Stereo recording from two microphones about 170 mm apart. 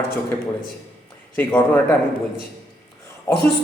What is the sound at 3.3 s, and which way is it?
Speech, 15° left (ahead or behind).